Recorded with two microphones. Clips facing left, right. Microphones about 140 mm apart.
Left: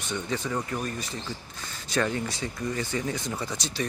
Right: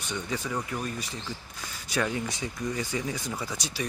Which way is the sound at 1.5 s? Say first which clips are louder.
Left 2 dB; 10° right (ahead or behind).